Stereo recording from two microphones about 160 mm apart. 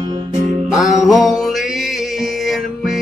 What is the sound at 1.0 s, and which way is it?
Music, centre (ahead or behind).